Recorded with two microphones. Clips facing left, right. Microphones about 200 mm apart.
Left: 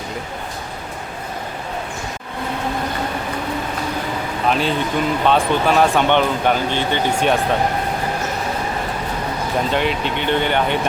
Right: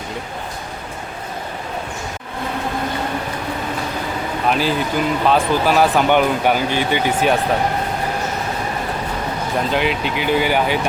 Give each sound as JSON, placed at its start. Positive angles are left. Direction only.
{"t": 4.4, "sound": "speech", "side_deg": 0}
{"t": 9.7, "sound": "speech", "side_deg": 0}